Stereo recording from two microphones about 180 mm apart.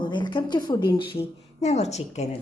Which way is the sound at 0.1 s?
25° left (ahead or behind).